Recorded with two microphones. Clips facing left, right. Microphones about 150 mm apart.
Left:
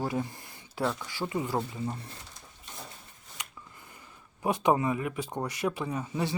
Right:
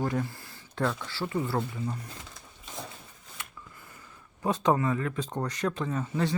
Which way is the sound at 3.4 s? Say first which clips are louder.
Even; 15° left (ahead or behind).